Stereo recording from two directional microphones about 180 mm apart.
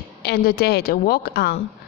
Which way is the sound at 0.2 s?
60° left (ahead or behind).